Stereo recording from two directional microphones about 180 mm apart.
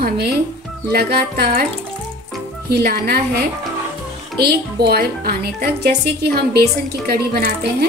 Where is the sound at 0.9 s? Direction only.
60° right (ahead or behind).